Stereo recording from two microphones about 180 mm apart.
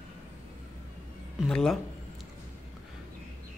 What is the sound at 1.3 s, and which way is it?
Speech, 5° left (ahead or behind).